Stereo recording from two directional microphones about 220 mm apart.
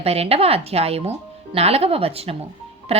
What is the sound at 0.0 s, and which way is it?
Speech, 30° right (ahead or behind).